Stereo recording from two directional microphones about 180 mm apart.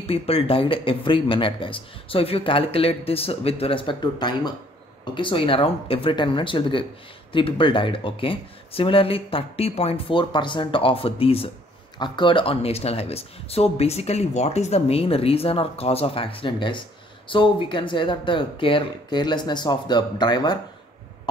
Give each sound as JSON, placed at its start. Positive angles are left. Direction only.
{"t": 0.0, "sound": "speech", "side_deg": 30}